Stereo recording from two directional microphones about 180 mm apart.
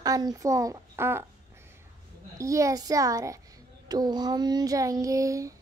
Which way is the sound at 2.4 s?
15° right (ahead or behind).